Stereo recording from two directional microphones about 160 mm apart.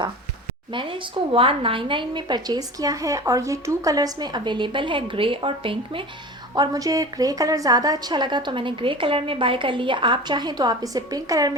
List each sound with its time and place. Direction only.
0.7 s a woman's voice: 30° right (ahead or behind)
6.5 s a woman's voice: 20° right (ahead or behind)